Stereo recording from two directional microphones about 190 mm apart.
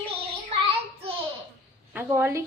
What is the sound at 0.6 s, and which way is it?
Child singing, 30° right (ahead or behind).